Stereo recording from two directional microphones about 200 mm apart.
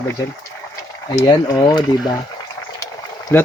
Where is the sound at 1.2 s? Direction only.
20° left (ahead or behind).